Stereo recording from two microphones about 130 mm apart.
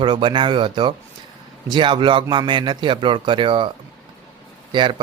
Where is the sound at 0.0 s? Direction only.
35° right (ahead or behind).